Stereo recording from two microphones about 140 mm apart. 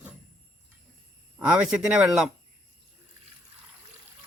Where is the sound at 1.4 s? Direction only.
10° right (ahead or behind).